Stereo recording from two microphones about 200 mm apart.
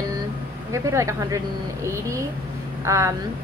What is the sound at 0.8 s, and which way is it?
A woman's voice, 15° right (ahead or behind).